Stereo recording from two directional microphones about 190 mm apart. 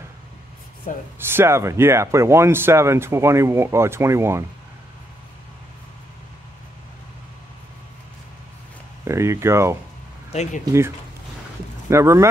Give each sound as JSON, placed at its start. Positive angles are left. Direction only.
{"t": 0.9, "sound": "speech", "side_deg": 45}
{"t": 1.2, "sound": "speech", "side_deg": -10}
{"t": 9.0, "sound": "speech", "side_deg": -15}
{"t": 10.3, "sound": "speech", "side_deg": 40}
{"t": 10.6, "sound": "speech", "side_deg": -15}
{"t": 11.9, "sound": "speech", "side_deg": -15}